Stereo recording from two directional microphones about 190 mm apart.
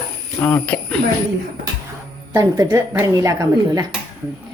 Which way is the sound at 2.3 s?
15° right (ahead or behind).